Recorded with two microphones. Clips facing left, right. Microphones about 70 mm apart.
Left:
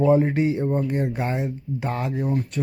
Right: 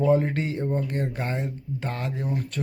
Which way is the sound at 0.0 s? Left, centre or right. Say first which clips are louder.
Left 4 dB; centre.